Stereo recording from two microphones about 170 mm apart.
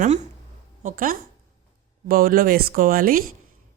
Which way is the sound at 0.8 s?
50° right (ahead or behind).